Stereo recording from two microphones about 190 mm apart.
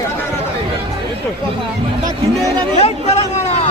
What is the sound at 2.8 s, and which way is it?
Vehicle, 35° left (ahead or behind).